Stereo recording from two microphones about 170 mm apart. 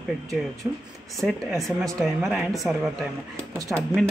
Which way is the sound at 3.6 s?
15° right (ahead or behind).